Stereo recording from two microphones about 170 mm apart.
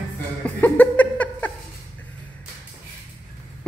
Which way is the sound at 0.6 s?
10° left (ahead or behind).